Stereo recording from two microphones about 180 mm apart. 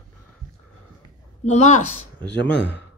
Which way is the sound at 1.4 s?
40° left (ahead or behind).